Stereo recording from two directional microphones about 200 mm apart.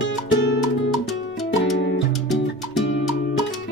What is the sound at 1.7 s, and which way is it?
Music, 60° left (ahead or behind).